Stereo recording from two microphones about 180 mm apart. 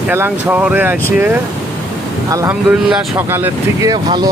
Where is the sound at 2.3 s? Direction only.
15° right (ahead or behind).